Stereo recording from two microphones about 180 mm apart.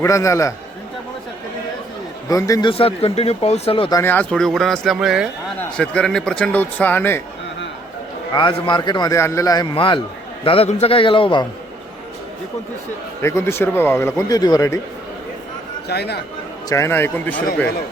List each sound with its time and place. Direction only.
0.0 s speech: 15° left (ahead or behind)
2.2 s speech: 20° left (ahead or behind)
4.0 s speech: 10° left (ahead or behind)
5.5 s speech: 5° left (ahead or behind)
8.3 s a man's voice: 25° left (ahead or behind)
13.2 s speech: 15° left (ahead or behind)
15.9 s speech: 65° left (ahead or behind)
16.6 s speech: 15° left (ahead or behind)